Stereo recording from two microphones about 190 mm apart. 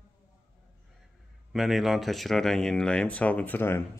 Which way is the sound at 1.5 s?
Centre (ahead or behind).